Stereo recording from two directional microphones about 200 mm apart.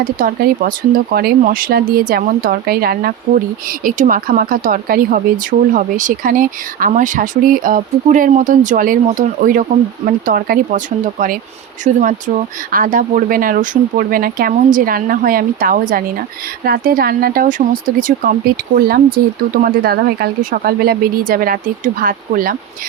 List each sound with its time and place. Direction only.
0.0 s speech: 45° right (ahead or behind)